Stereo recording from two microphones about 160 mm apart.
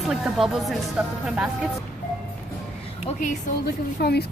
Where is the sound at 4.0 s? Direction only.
75° left (ahead or behind).